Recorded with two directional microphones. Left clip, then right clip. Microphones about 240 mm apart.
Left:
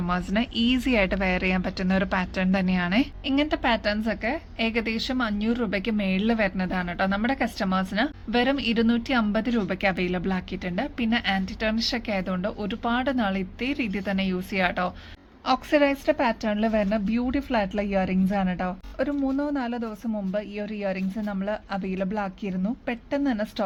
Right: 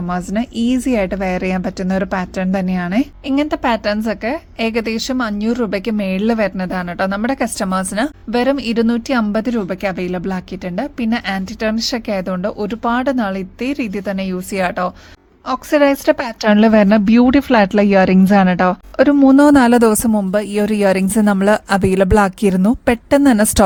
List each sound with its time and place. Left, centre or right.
0.1 s a woman's voice: right
15.4 s a woman's voice: right